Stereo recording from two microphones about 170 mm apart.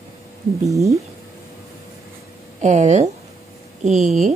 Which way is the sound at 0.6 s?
20° right (ahead or behind).